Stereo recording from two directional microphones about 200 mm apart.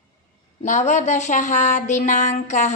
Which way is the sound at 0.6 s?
35° left (ahead or behind).